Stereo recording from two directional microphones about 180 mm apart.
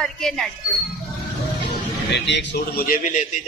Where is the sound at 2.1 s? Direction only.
75° left (ahead or behind).